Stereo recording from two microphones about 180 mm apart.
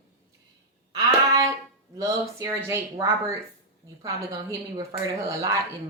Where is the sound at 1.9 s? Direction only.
20° right (ahead or behind).